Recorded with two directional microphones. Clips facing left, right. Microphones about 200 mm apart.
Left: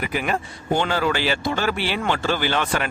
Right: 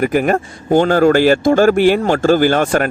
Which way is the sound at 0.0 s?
50° right (ahead or behind).